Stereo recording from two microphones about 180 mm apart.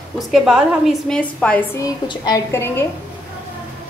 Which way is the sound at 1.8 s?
20° left (ahead or behind).